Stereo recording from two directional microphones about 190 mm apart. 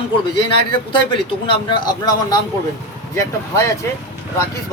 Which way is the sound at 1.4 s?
25° left (ahead or behind).